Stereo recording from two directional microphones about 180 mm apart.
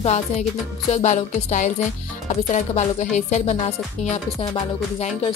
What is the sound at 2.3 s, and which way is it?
Music, 40° left (ahead or behind).